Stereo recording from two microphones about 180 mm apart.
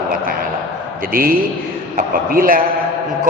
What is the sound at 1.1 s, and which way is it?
A man's voice, 55° right (ahead or behind).